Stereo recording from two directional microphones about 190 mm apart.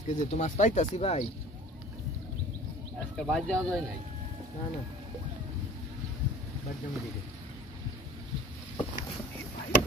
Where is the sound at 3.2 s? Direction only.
Centre (ahead or behind).